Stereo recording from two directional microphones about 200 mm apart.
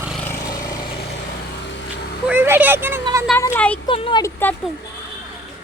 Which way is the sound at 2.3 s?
10° right (ahead or behind).